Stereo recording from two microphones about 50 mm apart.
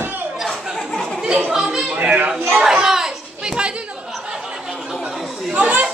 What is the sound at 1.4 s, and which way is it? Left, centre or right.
Chatter, centre.